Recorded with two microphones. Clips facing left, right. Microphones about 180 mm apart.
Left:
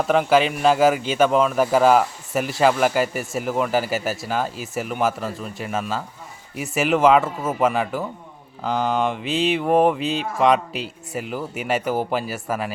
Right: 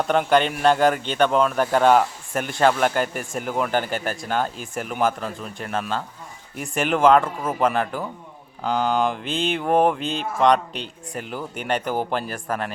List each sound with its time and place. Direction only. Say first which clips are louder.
0.0 s a man's voice: left 2 dB; centre (ahead or behind)